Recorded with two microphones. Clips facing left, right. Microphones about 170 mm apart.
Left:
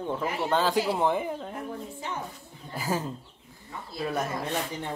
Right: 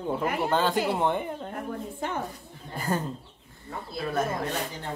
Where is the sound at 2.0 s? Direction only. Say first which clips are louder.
Right 5 dB; 55° right (ahead or behind).